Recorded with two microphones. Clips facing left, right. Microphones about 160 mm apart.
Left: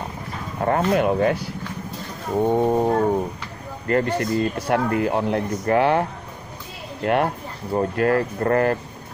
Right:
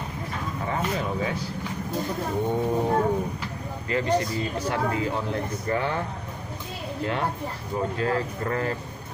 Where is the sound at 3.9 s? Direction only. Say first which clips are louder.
Left 4 dB; 55° left (ahead or behind).